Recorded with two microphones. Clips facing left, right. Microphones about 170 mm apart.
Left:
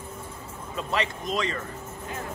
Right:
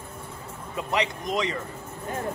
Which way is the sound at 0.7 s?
20° right (ahead or behind).